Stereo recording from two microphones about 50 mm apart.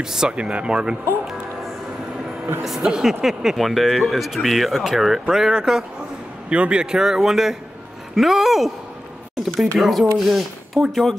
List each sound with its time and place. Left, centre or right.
0.0 s speech: centre
2.6 s speech: centre